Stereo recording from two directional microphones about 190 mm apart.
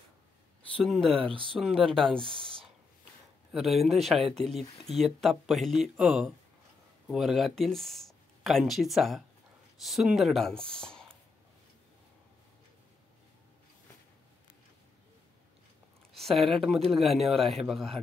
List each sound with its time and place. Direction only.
0.7 s speech: centre (ahead or behind)
1.1 s speech: 30° right (ahead or behind)
1.5 s speech: centre (ahead or behind)
2.2 s speech: 25° right (ahead or behind)
3.5 s speech: centre (ahead or behind)
16.1 s speech: centre (ahead or behind)